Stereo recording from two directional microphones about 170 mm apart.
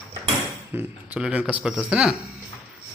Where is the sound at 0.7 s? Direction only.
5° right (ahead or behind).